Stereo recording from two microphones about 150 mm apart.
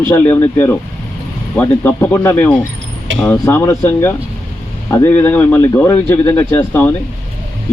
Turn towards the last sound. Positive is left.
turn(degrees=15)  # may be behind; listen again after turning